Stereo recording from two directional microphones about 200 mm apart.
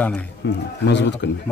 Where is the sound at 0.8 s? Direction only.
60° left (ahead or behind).